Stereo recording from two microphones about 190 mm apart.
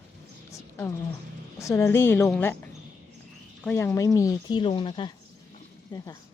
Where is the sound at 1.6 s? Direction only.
15° left (ahead or behind).